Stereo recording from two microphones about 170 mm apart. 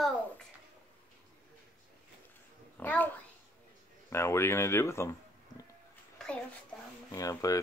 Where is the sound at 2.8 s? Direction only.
10° left (ahead or behind).